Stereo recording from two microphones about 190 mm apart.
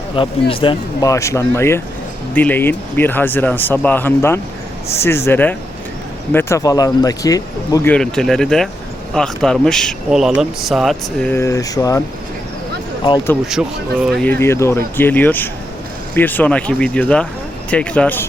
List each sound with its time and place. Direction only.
0.2 s speech: 30° left (ahead or behind)
7.9 s speech: 5° left (ahead or behind)
11.3 s speech: 15° left (ahead or behind)
13.4 s speech: 5° right (ahead or behind)